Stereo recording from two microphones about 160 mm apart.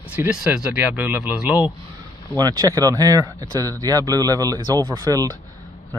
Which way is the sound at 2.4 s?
25° right (ahead or behind).